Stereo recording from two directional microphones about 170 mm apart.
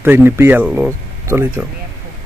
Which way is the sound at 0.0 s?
15° right (ahead or behind).